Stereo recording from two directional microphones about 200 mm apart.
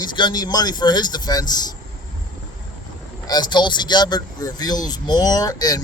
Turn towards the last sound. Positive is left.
turn(degrees=20)  # may be behind; listen again after turning